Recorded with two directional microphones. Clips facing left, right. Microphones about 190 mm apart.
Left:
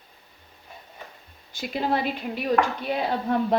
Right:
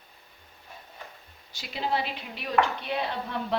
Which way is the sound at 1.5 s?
50° left (ahead or behind).